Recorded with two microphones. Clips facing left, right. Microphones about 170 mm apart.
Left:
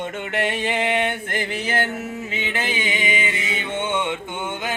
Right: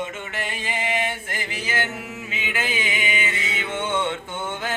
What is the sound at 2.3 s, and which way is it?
Music, 30° left (ahead or behind).